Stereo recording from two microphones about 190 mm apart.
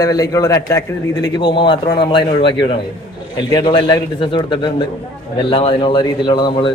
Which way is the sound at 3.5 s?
20° left (ahead or behind).